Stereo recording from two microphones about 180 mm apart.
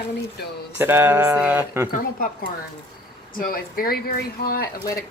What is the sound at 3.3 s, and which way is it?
A woman's voice, 55° left (ahead or behind).